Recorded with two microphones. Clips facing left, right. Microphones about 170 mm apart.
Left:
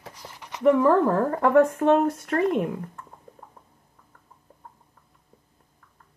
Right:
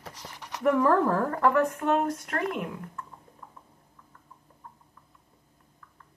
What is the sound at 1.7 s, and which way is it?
Speech, 35° left (ahead or behind).